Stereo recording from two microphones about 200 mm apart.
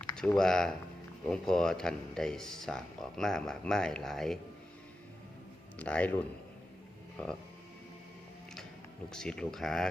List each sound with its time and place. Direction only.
0.0 s speech: 5° left (ahead or behind)
5.8 s speech: 5° left (ahead or behind)
7.2 s speech: 5° left (ahead or behind)
9.1 s speech: 5° left (ahead or behind)